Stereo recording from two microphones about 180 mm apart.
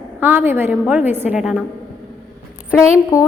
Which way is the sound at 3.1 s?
15° left (ahead or behind).